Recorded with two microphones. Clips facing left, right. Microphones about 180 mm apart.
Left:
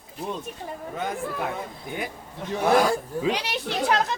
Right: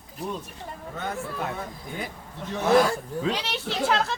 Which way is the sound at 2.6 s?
15° left (ahead or behind).